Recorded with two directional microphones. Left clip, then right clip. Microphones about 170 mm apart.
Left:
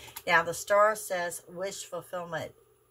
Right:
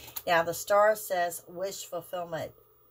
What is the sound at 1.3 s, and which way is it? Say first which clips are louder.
Speech: right 1 dB; 15° left (ahead or behind).